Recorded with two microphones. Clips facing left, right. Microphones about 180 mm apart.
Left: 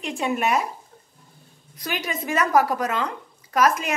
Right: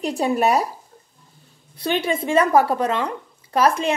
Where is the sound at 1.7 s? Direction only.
30° right (ahead or behind).